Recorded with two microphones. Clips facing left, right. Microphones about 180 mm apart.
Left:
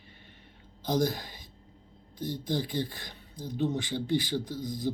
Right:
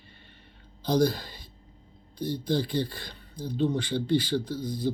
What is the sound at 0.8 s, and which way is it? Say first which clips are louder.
Speech: right 4 dB; 15° left (ahead or behind).